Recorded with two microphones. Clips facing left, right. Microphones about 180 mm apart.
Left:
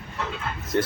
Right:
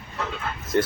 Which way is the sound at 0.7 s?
Centre (ahead or behind).